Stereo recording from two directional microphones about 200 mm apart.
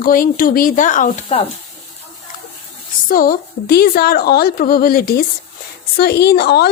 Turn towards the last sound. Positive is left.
turn(degrees=55)  # may be behind; listen again after turning